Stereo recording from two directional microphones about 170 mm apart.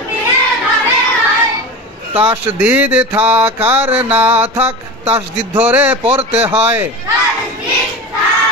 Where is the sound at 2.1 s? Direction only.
10° right (ahead or behind).